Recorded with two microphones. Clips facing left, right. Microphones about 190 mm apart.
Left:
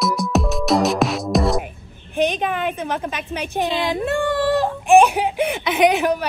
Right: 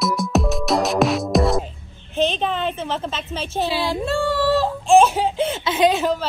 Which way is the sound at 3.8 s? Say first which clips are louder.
Left 1 dB; 15° left (ahead or behind).